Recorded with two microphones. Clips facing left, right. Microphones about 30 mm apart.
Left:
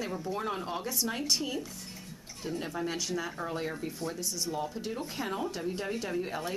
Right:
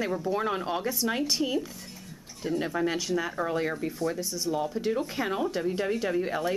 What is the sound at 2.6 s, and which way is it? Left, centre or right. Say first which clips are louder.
Speech: right 5 dB; centre.